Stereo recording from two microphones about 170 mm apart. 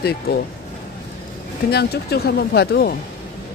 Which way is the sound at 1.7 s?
70° left (ahead or behind).